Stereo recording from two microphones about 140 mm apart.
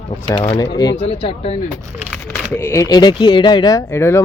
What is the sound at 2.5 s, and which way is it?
Speech, 15° left (ahead or behind).